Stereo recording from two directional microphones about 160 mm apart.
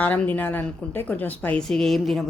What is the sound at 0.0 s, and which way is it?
A woman's voice, 10° left (ahead or behind).